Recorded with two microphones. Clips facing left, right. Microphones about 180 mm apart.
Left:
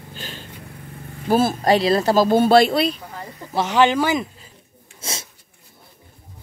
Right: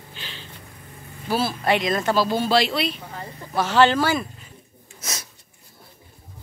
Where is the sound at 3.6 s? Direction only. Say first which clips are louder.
Left 1 dB; 15° left (ahead or behind).